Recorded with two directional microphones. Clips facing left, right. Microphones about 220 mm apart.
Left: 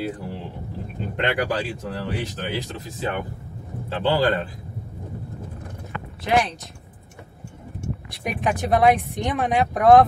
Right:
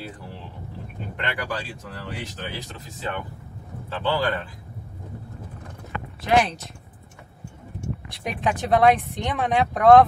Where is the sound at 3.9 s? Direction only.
25° left (ahead or behind).